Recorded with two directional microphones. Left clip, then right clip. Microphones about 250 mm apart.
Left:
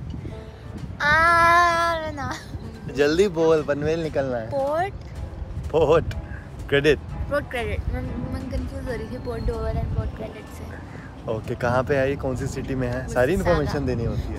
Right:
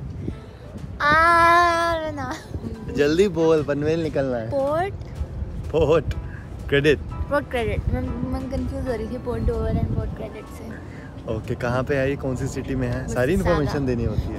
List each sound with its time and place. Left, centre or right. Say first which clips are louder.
0.9 s child singing: right 1 dB; centre
2.9 s speech: even; centre
5.7 s speech: left 1 dB; centre
7.2 s speech: right 3 dB; centre
11.2 s speech: left 2 dB; centre